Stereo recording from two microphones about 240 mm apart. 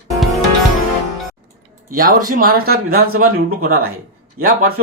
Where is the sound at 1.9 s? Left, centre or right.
Right.